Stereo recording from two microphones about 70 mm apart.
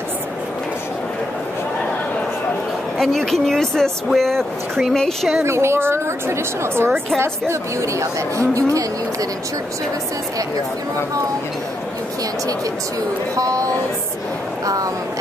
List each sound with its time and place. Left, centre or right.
3.0 s speech: centre
5.4 s a woman's voice: right
13.4 s a woman's voice: right